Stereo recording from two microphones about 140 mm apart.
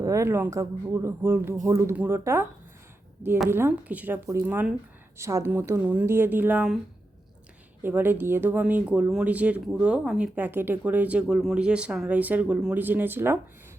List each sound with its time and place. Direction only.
0.0 s speech: 20° right (ahead or behind)
3.5 s speech: 15° right (ahead or behind)
7.8 s speech: 15° right (ahead or behind)